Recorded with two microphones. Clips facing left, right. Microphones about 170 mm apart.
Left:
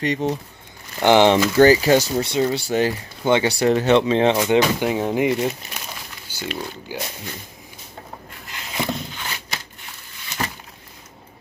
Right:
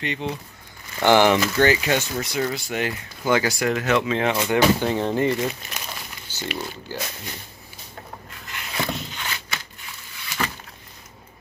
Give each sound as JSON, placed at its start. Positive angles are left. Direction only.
{"t": 0.0, "sound": "speech", "side_deg": 40}
{"t": 0.9, "sound": "speech", "side_deg": 20}
{"t": 1.3, "sound": "speech", "side_deg": 35}
{"t": 4.4, "sound": "speech", "side_deg": 15}
{"t": 6.2, "sound": "a sound", "side_deg": 10}
{"t": 6.9, "sound": "speech", "side_deg": 15}
{"t": 8.5, "sound": "a sound", "side_deg": 20}